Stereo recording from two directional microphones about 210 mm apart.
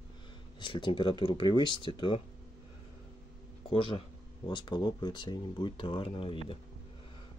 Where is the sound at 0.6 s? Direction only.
25° left (ahead or behind).